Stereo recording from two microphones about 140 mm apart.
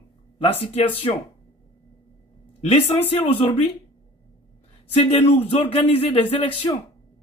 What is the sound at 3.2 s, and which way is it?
Speech, 35° left (ahead or behind).